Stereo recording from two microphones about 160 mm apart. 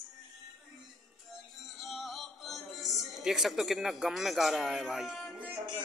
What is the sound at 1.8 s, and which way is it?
Music, centre (ahead or behind).